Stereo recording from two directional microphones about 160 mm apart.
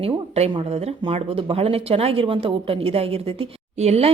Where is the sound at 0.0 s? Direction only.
40° right (ahead or behind).